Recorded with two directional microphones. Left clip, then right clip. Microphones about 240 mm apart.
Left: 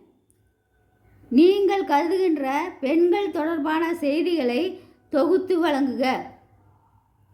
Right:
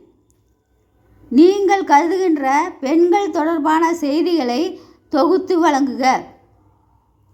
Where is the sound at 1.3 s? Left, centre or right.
Centre.